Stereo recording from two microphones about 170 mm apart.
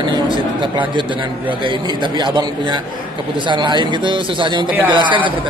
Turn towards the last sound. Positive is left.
turn(degrees=-30)  # may be behind; listen again after turning